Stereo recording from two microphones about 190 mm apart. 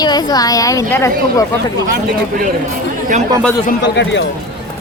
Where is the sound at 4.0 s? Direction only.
70° left (ahead or behind).